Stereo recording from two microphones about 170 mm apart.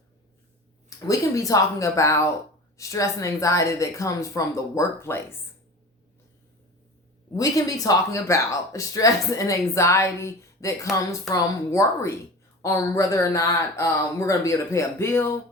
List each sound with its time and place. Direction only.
0.9 s speech: 20° left (ahead or behind)
7.3 s speech: 20° left (ahead or behind)